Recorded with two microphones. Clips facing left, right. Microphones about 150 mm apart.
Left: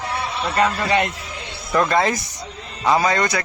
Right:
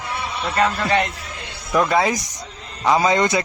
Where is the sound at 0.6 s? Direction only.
15° left (ahead or behind).